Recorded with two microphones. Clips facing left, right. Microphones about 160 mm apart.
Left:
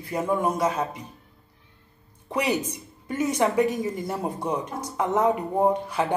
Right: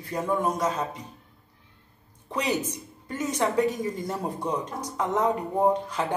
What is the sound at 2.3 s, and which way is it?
Speech, 10° left (ahead or behind).